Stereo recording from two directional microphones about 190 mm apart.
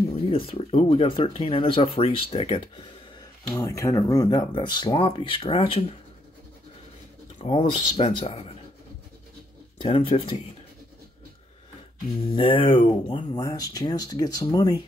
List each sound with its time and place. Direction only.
0.3 s speech: 30° left (ahead or behind)
3.4 s speech: 15° left (ahead or behind)
7.4 s speech: 30° left (ahead or behind)
9.8 s speech: 30° left (ahead or behind)
12.3 s speech: 25° left (ahead or behind)